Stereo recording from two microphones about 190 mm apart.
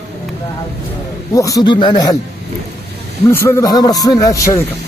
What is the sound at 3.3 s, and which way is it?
Speech, 10° left (ahead or behind).